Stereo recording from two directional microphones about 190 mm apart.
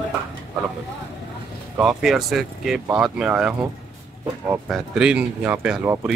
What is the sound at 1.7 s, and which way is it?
Speech, 5° right (ahead or behind).